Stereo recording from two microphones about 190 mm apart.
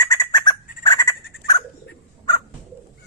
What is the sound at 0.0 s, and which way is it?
Fowl, 20° left (ahead or behind).